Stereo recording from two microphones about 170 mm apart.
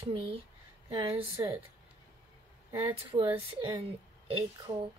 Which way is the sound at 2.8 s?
35° right (ahead or behind).